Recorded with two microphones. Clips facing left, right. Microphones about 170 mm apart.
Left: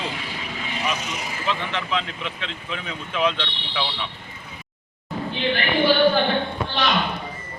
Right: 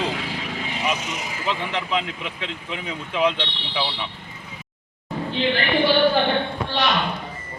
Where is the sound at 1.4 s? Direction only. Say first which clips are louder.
Right 1 dB; 15° right (ahead or behind).